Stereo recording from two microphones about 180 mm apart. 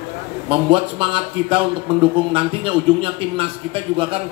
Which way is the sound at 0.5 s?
30° right (ahead or behind).